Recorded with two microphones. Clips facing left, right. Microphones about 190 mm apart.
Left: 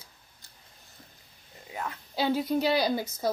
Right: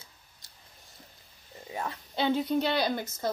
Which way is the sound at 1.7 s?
30° right (ahead or behind).